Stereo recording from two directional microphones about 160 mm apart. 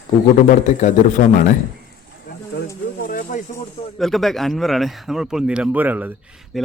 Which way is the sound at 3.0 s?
60° left (ahead or behind).